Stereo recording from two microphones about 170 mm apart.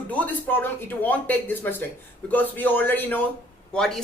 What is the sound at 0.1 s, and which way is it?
Speech, 10° left (ahead or behind).